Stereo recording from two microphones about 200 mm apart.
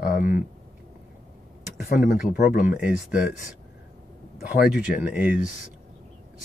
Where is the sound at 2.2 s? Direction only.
45° left (ahead or behind).